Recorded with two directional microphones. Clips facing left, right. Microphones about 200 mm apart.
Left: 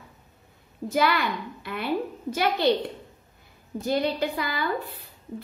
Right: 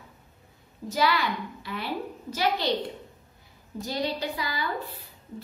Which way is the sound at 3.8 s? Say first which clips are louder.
Left 5 dB; 55° left (ahead or behind).